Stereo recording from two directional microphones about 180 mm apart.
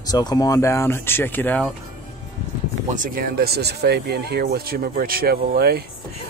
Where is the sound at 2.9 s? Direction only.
50° right (ahead or behind).